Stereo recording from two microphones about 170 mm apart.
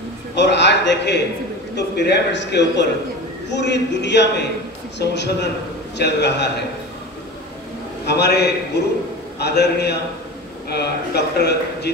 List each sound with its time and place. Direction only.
0.4 s a man's voice: 90° left
8.0 s speech: 75° left (ahead or behind)